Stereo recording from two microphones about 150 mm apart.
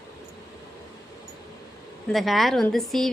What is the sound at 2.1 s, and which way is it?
A woman's voice, centre (ahead or behind).